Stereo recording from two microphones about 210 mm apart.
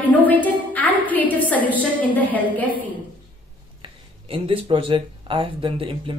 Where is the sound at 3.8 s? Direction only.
25° right (ahead or behind).